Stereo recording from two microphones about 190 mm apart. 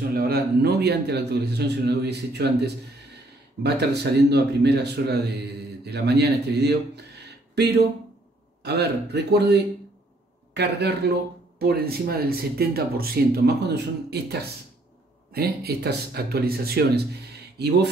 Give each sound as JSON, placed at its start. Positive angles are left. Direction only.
{"t": 0.1, "sound": "a man's voice", "side_deg": -55}
{"t": 15.3, "sound": "a man's voice", "side_deg": -55}